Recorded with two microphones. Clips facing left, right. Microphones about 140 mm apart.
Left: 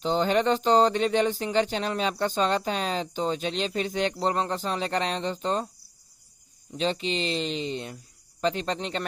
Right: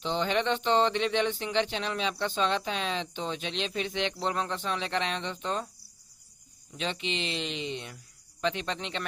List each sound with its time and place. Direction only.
0.0 s speech: 40° left (ahead or behind)
6.7 s speech: 35° left (ahead or behind)